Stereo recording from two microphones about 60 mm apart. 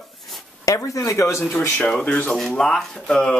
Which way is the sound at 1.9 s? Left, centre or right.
Centre.